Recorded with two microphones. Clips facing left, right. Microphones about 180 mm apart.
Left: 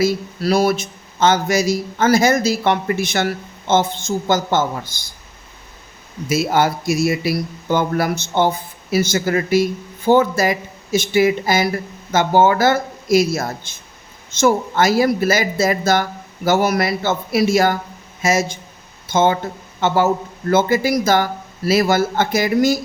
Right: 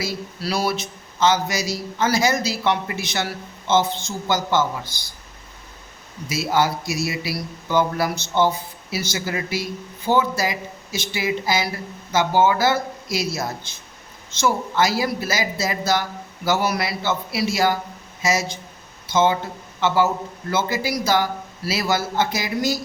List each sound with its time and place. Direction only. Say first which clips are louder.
0.0 s speech: left 9 dB; 50° left (ahead or behind)
6.2 s a man's voice: left 4 dB; 50° left (ahead or behind)